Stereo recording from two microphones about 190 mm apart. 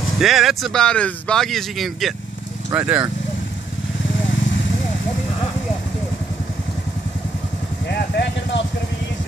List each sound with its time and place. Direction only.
0.2 s speech: centre (ahead or behind)
7.9 s vehicle: 65° left (ahead or behind)